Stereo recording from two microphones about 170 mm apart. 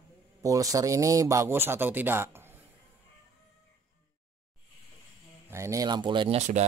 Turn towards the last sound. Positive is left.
turn(degrees=-30)  # may be behind; listen again after turning